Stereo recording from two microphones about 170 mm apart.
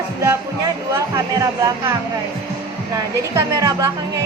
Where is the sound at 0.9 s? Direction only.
20° right (ahead or behind).